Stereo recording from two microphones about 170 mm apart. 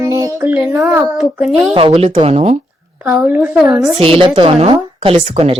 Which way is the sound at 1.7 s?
35° right (ahead or behind).